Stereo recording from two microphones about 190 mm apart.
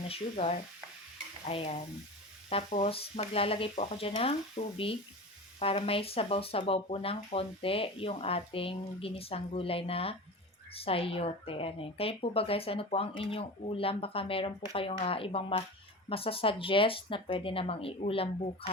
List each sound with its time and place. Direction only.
0.1 s a woman's voice: 35° left (ahead or behind)